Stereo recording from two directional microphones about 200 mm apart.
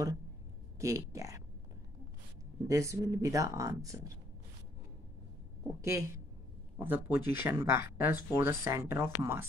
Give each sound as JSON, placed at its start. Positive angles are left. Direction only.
{"t": 0.7, "sound": "speech", "side_deg": -15}
{"t": 2.7, "sound": "speech", "side_deg": -15}
{"t": 5.8, "sound": "speech", "side_deg": -15}